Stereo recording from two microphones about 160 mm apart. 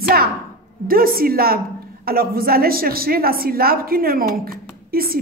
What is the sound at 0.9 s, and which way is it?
A woman's voice, 65° right (ahead or behind).